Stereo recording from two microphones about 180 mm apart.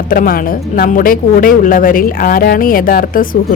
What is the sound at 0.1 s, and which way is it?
Speech, 50° left (ahead or behind).